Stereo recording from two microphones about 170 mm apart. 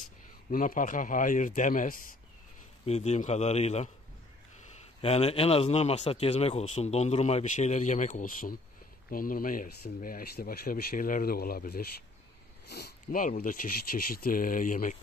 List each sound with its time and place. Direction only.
0.5 s speech: 55° left (ahead or behind)
2.8 s speech: 40° left (ahead or behind)
5.0 s speech: 35° left (ahead or behind)